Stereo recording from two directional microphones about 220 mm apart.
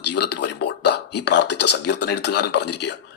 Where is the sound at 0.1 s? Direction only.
50° left (ahead or behind).